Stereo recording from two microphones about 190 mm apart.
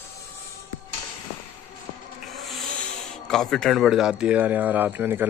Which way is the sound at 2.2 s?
Centre (ahead or behind).